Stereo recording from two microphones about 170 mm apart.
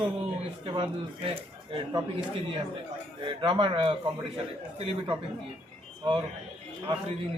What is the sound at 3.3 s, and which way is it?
Speech, 30° right (ahead or behind).